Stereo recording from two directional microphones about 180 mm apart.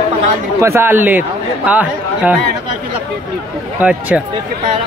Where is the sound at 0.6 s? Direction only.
15° right (ahead or behind).